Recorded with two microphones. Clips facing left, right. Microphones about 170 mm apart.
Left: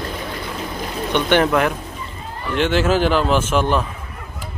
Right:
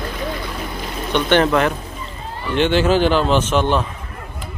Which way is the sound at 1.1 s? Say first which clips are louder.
Right 1 dB; 10° left (ahead or behind).